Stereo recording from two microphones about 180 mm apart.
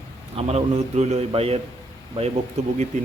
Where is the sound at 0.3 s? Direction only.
35° right (ahead or behind).